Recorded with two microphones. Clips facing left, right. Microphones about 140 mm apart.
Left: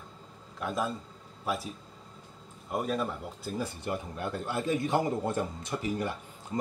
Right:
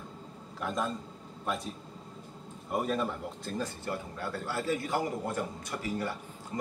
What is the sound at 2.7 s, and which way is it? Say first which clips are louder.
A man's voice: even; centre (ahead or behind).